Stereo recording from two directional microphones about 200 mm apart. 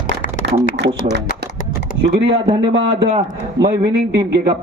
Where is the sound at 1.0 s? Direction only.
55° right (ahead or behind).